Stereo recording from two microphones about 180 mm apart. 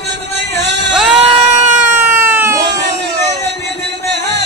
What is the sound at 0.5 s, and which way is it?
Music, 75° right (ahead or behind).